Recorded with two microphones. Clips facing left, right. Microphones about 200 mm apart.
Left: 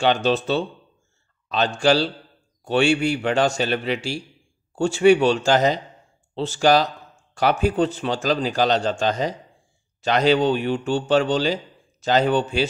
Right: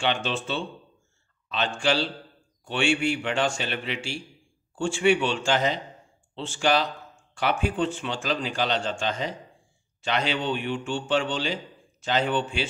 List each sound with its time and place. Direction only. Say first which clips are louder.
0.0 s a man's voice: left 8 dB; 40° left (ahead or behind)